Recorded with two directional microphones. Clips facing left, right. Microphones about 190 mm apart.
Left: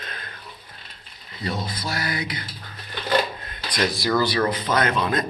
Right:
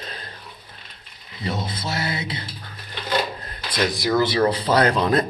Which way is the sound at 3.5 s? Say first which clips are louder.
Even; 20° right (ahead or behind).